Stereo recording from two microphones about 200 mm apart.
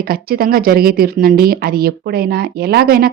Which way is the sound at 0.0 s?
50° right (ahead or behind).